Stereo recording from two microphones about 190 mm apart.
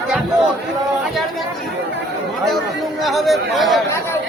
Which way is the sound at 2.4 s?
Centre (ahead or behind).